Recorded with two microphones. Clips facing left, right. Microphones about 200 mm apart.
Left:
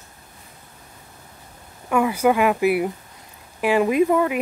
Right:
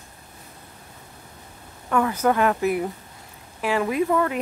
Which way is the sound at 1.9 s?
10° left (ahead or behind).